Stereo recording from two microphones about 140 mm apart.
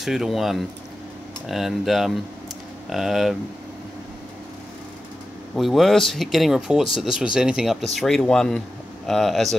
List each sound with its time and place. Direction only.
0.0 s speech: centre (ahead or behind)
5.6 s speech: centre (ahead or behind)